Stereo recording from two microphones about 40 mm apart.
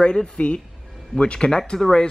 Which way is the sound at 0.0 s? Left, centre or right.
Left.